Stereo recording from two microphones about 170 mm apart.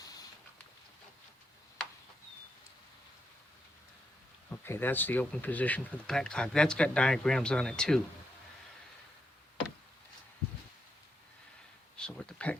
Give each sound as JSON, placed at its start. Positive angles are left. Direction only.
{"t": 0.0, "sound": "patter", "side_deg": 20}
{"t": 4.4, "sound": "speech", "side_deg": 10}
{"t": 11.9, "sound": "a sound", "side_deg": 5}